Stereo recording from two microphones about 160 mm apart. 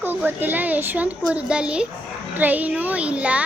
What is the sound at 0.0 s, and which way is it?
A child's voice, 10° right (ahead or behind).